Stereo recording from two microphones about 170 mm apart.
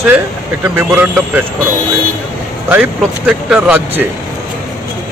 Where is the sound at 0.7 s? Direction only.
15° right (ahead or behind).